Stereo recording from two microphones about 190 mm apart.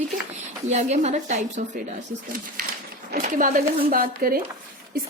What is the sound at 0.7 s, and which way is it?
A woman's voice, 35° right (ahead or behind).